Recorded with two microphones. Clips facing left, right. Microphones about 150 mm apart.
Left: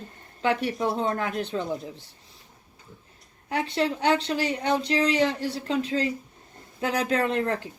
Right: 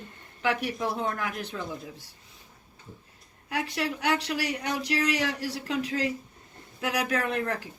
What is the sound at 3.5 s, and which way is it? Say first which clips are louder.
Speech: left 5 dB; 25° left (ahead or behind).